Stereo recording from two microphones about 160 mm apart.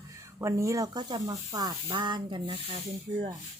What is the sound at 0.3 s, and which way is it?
Speech, 20° right (ahead or behind).